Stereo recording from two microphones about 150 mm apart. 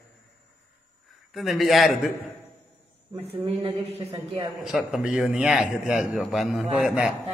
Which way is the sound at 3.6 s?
45° right (ahead or behind).